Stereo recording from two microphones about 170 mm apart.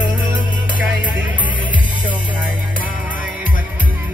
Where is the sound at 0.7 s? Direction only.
10° right (ahead or behind).